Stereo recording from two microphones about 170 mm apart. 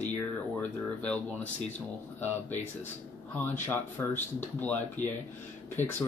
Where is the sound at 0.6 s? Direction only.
10° left (ahead or behind).